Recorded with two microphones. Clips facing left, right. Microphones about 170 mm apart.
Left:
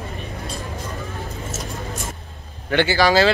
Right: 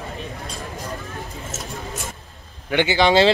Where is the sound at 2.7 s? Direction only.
15° right (ahead or behind).